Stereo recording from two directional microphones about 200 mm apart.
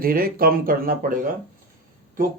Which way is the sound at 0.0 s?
45° right (ahead or behind).